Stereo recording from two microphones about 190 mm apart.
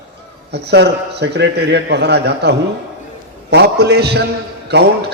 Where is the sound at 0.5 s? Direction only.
60° right (ahead or behind).